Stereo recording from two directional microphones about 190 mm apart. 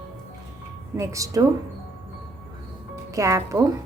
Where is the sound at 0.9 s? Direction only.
15° right (ahead or behind).